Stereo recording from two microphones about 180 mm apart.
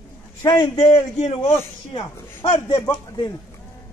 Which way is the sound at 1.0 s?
40° left (ahead or behind).